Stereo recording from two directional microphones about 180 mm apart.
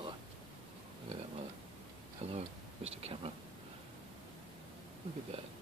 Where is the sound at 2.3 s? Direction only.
35° right (ahead or behind).